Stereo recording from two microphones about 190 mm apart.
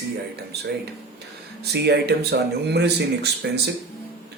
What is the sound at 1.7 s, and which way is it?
Speech, 60° right (ahead or behind).